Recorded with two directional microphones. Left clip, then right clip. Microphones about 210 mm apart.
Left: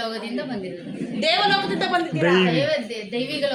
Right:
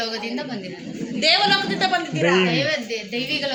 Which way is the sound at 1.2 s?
10° left (ahead or behind).